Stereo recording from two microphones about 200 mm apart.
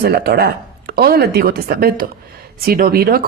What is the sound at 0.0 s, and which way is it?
Speech, 50° right (ahead or behind).